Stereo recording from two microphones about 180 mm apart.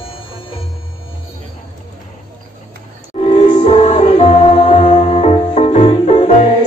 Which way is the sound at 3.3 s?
35° left (ahead or behind).